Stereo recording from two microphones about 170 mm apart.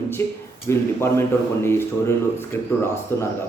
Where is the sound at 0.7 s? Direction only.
15° left (ahead or behind).